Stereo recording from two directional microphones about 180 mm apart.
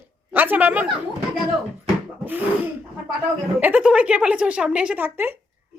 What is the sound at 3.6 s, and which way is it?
A woman's voice, 10° right (ahead or behind).